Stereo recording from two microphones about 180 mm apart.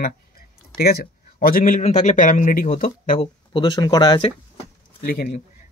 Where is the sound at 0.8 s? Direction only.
55° left (ahead or behind).